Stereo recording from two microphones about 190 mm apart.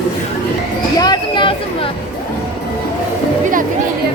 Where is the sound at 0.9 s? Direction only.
20° left (ahead or behind).